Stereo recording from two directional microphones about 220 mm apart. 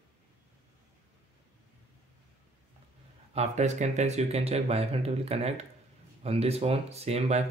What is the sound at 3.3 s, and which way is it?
Speech, 30° right (ahead or behind).